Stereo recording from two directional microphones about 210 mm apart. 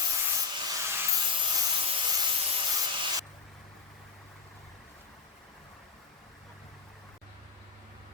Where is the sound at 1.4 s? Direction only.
20° right (ahead or behind).